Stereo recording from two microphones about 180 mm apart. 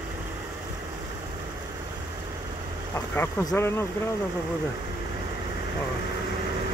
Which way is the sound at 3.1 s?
15° left (ahead or behind).